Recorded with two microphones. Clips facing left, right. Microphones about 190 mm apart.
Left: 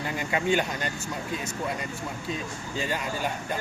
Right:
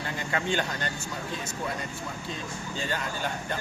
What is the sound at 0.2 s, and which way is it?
Speech, 10° left (ahead or behind).